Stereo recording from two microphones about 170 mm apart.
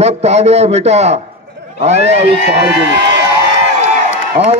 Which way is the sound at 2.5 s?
85° right.